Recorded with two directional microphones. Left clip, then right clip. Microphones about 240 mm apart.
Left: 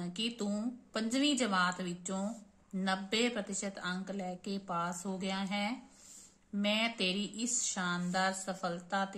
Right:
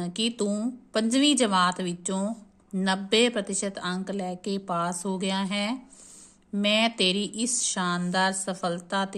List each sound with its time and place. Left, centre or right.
0.0 s a woman's voice: right